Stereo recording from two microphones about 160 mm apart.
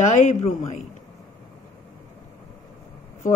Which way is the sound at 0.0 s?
45° left (ahead or behind).